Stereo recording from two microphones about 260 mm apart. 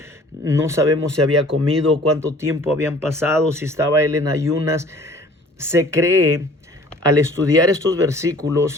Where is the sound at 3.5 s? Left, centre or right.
Centre.